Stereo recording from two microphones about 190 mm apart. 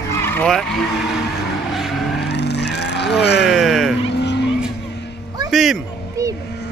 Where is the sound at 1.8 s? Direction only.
Centre (ahead or behind).